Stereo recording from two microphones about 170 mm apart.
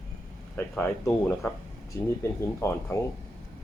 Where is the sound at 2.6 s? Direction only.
15° left (ahead or behind).